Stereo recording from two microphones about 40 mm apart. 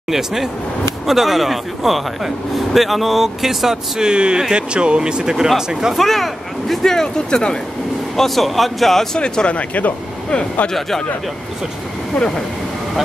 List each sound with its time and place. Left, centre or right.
0.1 s speech: centre
4.0 s speech: right
5.9 s speech: centre
6.8 s speech: centre
8.2 s speech: centre
9.2 s speech: left
9.6 s speech: left